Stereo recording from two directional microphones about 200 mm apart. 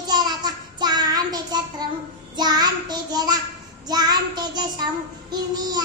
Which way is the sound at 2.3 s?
20° right (ahead or behind).